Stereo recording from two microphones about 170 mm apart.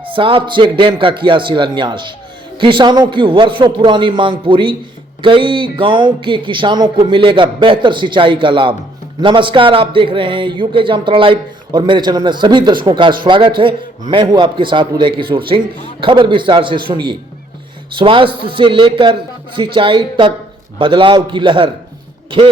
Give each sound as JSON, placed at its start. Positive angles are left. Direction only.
{"t": 0.0, "sound": "a man's voice", "side_deg": -30}